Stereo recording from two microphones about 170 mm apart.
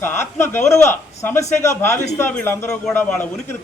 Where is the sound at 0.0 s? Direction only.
15° left (ahead or behind).